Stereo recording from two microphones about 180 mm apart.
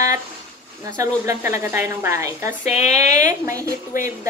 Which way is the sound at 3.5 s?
20° right (ahead or behind).